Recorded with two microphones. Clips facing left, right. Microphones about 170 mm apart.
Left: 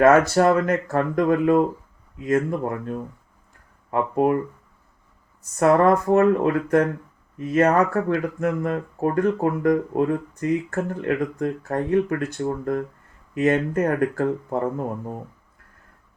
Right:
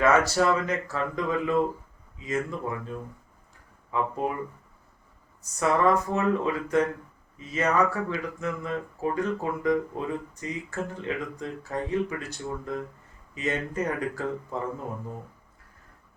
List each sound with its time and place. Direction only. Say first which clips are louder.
0.0 s speech: left 7 dB; 55° left (ahead or behind)
5.4 s speech: left 7 dB; 55° left (ahead or behind)